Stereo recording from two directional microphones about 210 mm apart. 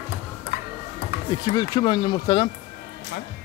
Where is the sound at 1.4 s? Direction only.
20° left (ahead or behind).